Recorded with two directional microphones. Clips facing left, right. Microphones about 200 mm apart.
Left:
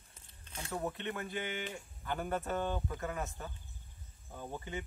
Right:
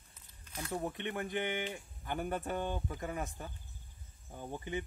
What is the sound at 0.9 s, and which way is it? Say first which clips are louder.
Speech: right 2 dB; 15° right (ahead or behind).